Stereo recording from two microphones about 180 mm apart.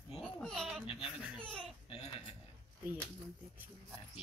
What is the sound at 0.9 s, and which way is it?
Speech, centre (ahead or behind).